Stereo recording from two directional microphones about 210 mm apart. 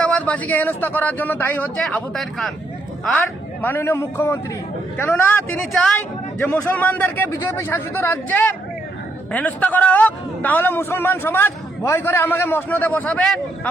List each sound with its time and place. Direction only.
0.0 s a man's voice: 5° left (ahead or behind)
3.6 s a man's voice: 10° left (ahead or behind)